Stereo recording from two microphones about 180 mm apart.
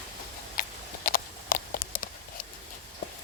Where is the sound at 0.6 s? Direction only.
50° left (ahead or behind).